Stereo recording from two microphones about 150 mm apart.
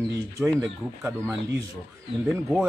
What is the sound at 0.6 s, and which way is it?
Speech, 15° right (ahead or behind).